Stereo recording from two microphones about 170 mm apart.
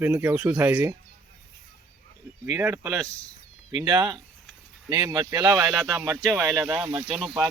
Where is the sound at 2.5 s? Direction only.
15° right (ahead or behind).